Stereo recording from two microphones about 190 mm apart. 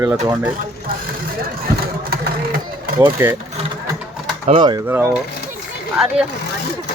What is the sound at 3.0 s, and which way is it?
Speech, 10° right (ahead or behind).